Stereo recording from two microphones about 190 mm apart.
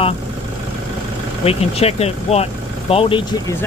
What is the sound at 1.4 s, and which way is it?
Speech, 30° left (ahead or behind).